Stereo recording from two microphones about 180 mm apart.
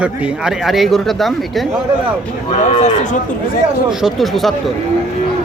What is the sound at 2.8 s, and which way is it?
Speech, 40° left (ahead or behind).